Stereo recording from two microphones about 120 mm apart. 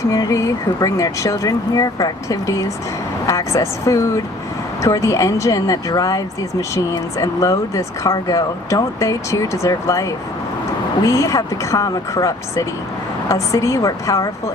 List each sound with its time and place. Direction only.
0.1 s speech: 30° left (ahead or behind)